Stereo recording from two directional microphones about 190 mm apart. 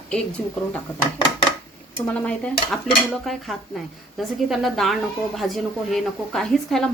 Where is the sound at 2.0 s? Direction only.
5° left (ahead or behind).